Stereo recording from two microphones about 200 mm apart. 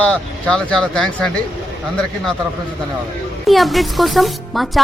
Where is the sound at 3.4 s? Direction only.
Centre (ahead or behind).